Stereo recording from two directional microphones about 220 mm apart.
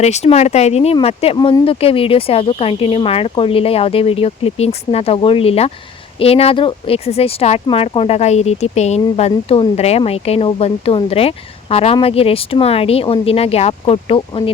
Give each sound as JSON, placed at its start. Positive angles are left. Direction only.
{"t": 0.0, "sound": "speech", "side_deg": 30}